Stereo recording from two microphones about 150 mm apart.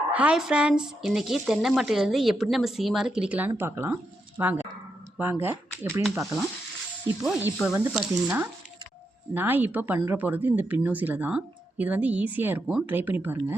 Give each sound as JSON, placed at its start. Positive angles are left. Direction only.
{"t": 0.1, "sound": "speech", "side_deg": -10}
{"t": 7.4, "sound": "speech", "side_deg": -10}